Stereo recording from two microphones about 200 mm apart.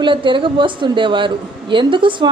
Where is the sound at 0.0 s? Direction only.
25° right (ahead or behind).